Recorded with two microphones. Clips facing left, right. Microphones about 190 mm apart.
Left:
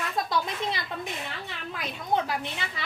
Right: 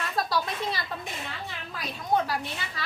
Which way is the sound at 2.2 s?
20° left (ahead or behind).